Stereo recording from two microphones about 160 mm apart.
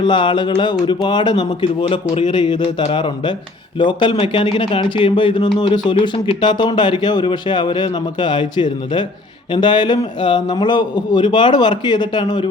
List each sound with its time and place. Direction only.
0.0 s a man's voice: 30° left (ahead or behind)